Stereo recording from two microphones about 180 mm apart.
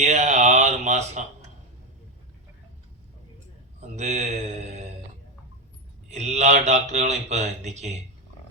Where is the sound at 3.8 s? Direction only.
40° right (ahead or behind).